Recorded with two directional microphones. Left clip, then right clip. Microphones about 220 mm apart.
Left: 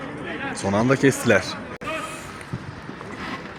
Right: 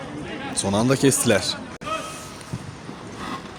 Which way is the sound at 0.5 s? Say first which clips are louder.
Even; 10° right (ahead or behind).